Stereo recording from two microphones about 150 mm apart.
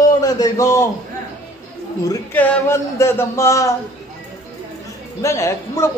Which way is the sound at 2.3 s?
15° left (ahead or behind).